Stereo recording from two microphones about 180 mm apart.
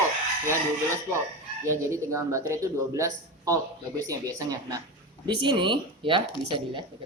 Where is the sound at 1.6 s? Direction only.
15° right (ahead or behind).